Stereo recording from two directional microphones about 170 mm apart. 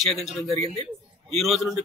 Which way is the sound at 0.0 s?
Centre (ahead or behind).